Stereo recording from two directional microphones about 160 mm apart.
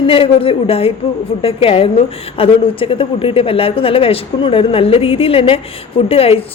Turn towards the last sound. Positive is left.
turn(degrees=35)  # may be behind; listen again after turning